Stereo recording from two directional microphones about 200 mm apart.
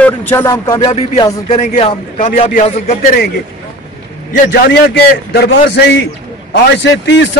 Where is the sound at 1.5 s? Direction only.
35° left (ahead or behind).